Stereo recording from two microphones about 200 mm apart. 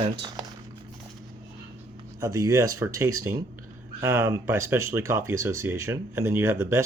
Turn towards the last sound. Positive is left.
turn(degrees=-15)  # may be behind; listen again after turning